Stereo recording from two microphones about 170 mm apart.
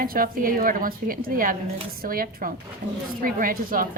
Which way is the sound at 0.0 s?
55° right (ahead or behind).